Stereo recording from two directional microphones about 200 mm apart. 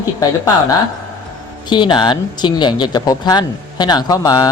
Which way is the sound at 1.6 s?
25° left (ahead or behind).